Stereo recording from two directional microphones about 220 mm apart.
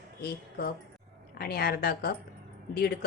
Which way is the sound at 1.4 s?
45° left (ahead or behind).